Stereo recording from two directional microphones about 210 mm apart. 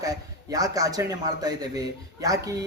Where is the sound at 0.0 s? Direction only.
15° right (ahead or behind).